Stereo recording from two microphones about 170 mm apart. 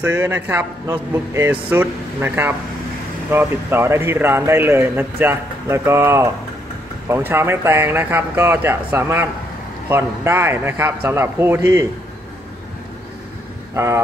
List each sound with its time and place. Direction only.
0.0 s a man's voice: 15° right (ahead or behind)
13.7 s a man's voice: 15° right (ahead or behind)